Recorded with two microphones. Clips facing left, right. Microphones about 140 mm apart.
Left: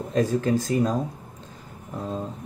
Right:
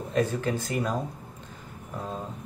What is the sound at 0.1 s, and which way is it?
Speech, 40° left (ahead or behind).